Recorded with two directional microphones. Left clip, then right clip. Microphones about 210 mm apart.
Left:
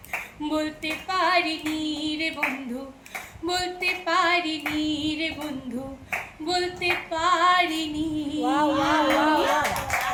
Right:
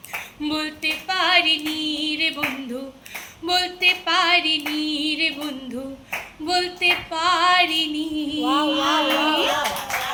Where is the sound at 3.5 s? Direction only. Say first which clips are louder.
Right 7 dB; 10° left (ahead or behind).